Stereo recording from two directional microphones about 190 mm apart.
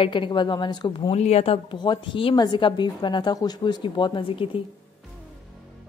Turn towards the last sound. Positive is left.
turn(degrees=30)  # may be behind; listen again after turning